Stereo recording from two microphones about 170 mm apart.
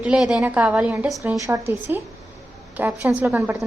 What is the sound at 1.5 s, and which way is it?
A woman's voice, 15° right (ahead or behind).